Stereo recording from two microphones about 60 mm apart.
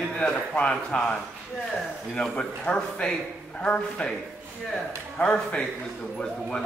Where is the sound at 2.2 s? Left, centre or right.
Centre.